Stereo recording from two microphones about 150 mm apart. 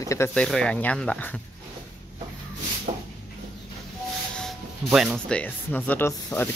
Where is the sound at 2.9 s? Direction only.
50° right (ahead or behind).